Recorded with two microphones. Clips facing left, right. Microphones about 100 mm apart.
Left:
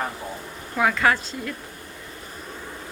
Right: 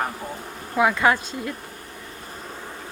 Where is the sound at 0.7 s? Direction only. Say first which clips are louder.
Right 2 dB; 20° right (ahead or behind).